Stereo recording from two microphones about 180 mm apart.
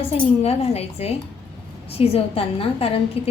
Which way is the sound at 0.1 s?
35° left (ahead or behind).